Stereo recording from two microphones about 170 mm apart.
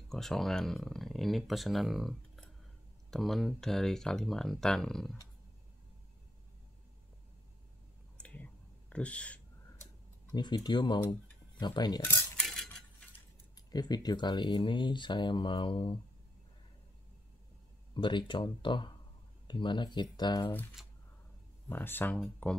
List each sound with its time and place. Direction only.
0.1 s speech: centre (ahead or behind)
8.2 s whispering: 10° left (ahead or behind)
10.3 s speech: 25° left (ahead or behind)
12.0 s cutlery: 15° left (ahead or behind)
12.4 s a sound: 5° left (ahead or behind)
13.6 s speech: 25° left (ahead or behind)
17.9 s speech: 30° left (ahead or behind)
20.8 s a sound: centre (ahead or behind)
21.6 s speech: 10° left (ahead or behind)